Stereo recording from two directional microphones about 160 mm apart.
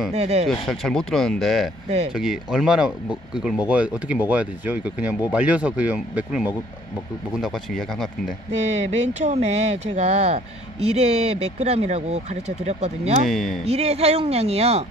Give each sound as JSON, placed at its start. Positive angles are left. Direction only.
{"t": 0.1, "sound": "speech", "side_deg": -40}
{"t": 0.5, "sound": "speech", "side_deg": 0}
{"t": 8.5, "sound": "speech", "side_deg": -45}
{"t": 13.3, "sound": "speech", "side_deg": 0}
{"t": 13.7, "sound": "speech", "side_deg": -40}